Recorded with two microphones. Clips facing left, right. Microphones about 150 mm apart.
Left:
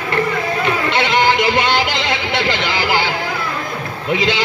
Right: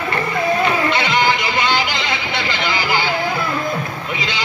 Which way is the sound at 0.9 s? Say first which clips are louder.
Left 2 dB; 75° left (ahead or behind).